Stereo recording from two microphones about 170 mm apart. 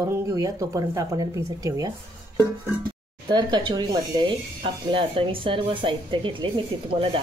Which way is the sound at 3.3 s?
25° right (ahead or behind).